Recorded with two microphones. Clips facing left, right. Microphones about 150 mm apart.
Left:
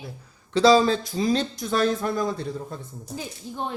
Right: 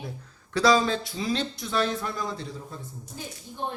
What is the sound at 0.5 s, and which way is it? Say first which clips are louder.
Speech: left 5 dB; 30° left (ahead or behind).